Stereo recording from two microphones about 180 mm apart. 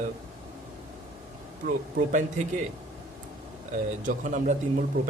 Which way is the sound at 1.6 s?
45° right (ahead or behind).